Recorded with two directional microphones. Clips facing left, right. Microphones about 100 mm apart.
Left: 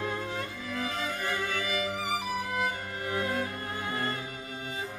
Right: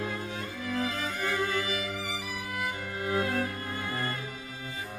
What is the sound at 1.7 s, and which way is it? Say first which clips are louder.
Music: left 3 dB; 45° left (ahead or behind).